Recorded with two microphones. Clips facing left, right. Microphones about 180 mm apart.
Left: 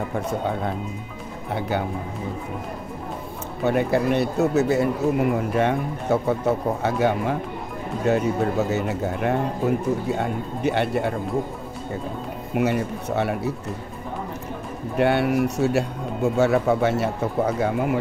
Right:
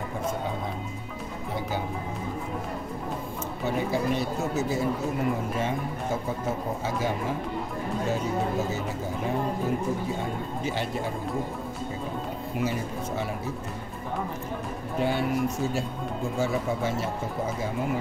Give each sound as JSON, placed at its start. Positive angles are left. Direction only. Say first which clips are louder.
{"t": 1.5, "sound": "speech", "louder": "left 6 dB", "side_deg": 65}
{"t": 3.6, "sound": "speech", "louder": "left 7 dB", "side_deg": 65}
{"t": 12.5, "sound": "speech", "louder": "left 8 dB", "side_deg": 65}
{"t": 15.0, "sound": "speech", "louder": "left 6 dB", "side_deg": 70}